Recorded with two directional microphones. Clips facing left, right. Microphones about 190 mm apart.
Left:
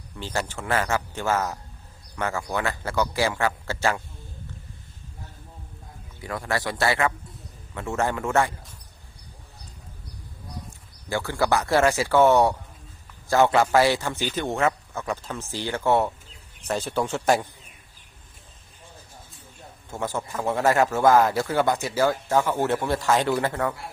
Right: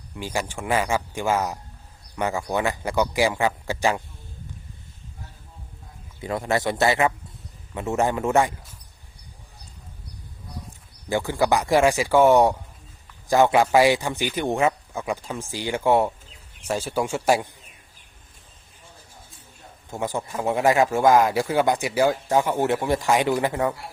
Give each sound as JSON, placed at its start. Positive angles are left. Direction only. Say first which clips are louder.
{"t": 0.2, "sound": "a man's voice", "louder": "right 1 dB", "side_deg": -10}
{"t": 6.2, "sound": "a man's voice", "louder": "right 4 dB", "side_deg": -20}
{"t": 11.1, "sound": "a man's voice", "louder": "right 2 dB", "side_deg": -15}
{"t": 19.9, "sound": "a man's voice", "louder": "right 2 dB", "side_deg": -15}